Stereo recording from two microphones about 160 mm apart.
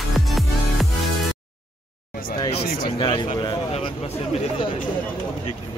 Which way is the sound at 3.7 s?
40° left (ahead or behind).